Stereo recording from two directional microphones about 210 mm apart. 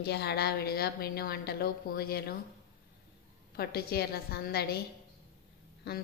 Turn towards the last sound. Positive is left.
turn(degrees=50)  # may be behind; listen again after turning